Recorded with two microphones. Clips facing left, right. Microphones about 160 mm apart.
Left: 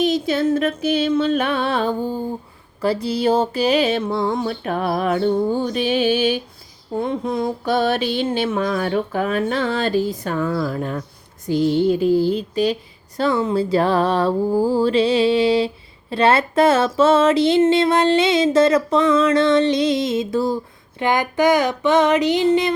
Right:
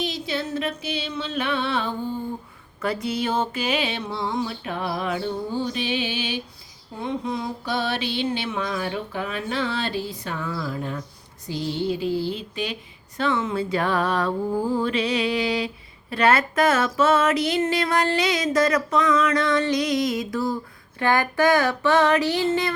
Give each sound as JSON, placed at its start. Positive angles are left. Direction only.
{"t": 0.0, "sound": "a sound", "side_deg": 45}
{"t": 13.1, "sound": "music", "side_deg": 35}
{"t": 21.0, "sound": "music", "side_deg": 20}